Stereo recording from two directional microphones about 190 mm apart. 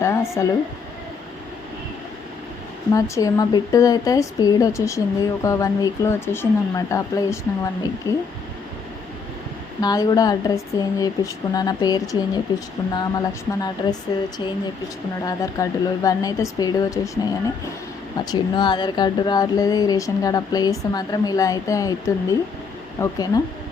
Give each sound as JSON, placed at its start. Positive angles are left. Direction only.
{"t": 0.0, "sound": "speech", "side_deg": 15}
{"t": 2.9, "sound": "a woman's voice", "side_deg": 15}
{"t": 9.8, "sound": "speech", "side_deg": 20}
{"t": 18.3, "sound": "speech", "side_deg": 25}